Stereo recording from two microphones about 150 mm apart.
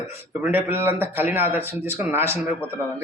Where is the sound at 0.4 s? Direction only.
15° right (ahead or behind).